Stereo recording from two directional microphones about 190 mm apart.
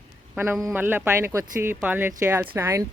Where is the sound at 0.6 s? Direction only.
10° right (ahead or behind).